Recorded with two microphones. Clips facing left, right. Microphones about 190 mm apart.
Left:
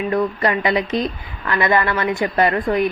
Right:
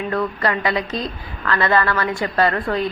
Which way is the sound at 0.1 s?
20° left (ahead or behind).